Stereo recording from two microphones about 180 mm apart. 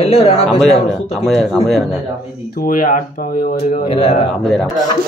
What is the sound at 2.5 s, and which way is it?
Speech, 50° left (ahead or behind).